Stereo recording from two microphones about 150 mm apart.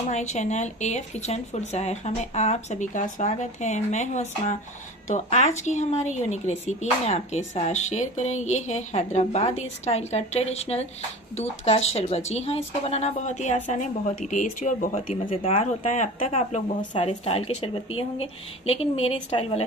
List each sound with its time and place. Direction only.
0.1 s speech: 50° left (ahead or behind)
15.4 s a woman's voice: 40° left (ahead or behind)